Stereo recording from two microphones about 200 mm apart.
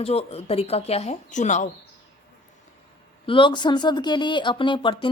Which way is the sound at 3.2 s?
25° left (ahead or behind).